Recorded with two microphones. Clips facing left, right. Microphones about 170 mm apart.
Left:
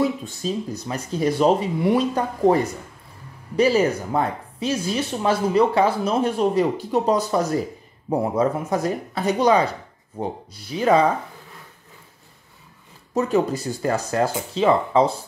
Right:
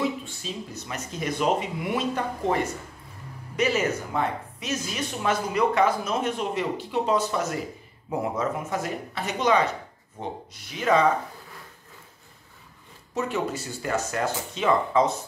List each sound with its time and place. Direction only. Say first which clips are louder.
0.0 s speech: left 6 dB; 40° left (ahead or behind)
13.1 s speech: left 7 dB; 35° left (ahead or behind)